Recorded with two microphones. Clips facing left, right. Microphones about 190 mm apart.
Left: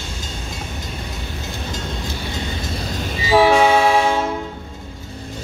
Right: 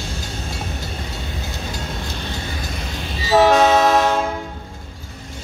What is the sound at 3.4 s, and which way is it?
Train, 10° left (ahead or behind).